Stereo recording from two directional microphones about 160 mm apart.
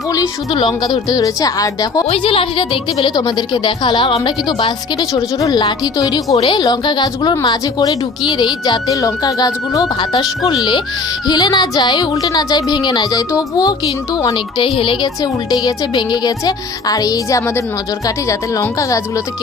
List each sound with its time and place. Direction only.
0.1 s a woman's voice: 25° left (ahead or behind)
2.0 s a woman's voice: 35° left (ahead or behind); by 19.2 s 20° left (ahead or behind)